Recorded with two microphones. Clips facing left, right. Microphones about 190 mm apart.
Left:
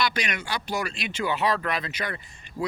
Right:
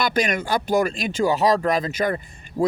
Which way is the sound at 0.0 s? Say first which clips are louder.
Right 6 dB; 50° right (ahead or behind).